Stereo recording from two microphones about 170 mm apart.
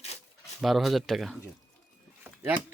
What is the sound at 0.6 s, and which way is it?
Speech, centre (ahead or behind).